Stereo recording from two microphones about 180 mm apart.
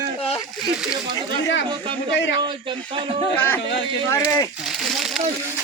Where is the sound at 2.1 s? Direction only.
90° left.